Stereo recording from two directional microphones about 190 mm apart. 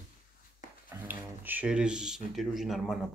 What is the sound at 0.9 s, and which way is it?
Speech, 10° right (ahead or behind).